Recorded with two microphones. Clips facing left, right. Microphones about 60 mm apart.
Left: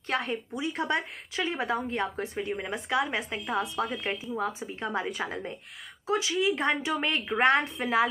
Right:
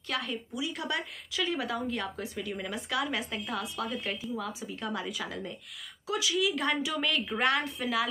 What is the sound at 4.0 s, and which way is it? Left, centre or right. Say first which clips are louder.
Speech: left 4 dB; left.